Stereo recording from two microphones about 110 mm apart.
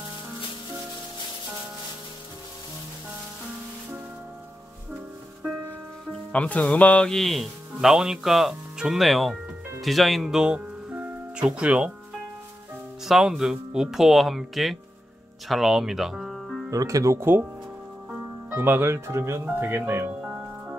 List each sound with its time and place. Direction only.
6.3 s speech: 15° left (ahead or behind); by 11.9 s 10° right (ahead or behind)
13.0 s speech: 5° right (ahead or behind)
16.7 s speech: 30° right (ahead or behind)